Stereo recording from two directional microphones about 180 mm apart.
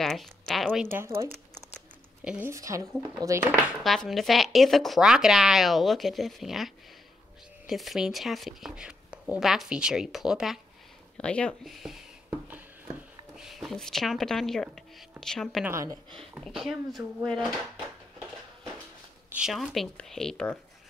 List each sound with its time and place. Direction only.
0.0 s speech: centre (ahead or behind)
0.9 s speech: 15° right (ahead or behind)
2.2 s speech: 10° right (ahead or behind)
3.6 s speech: centre (ahead or behind)
12.3 s a sound: 10° right (ahead or behind)
13.4 s speech: centre (ahead or behind)
15.6 s speech: 15° right (ahead or behind)
16.2 s speech: centre (ahead or behind)
19.2 s speech: 5° right (ahead or behind)